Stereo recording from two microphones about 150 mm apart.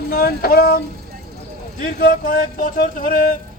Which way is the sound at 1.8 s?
70° left (ahead or behind).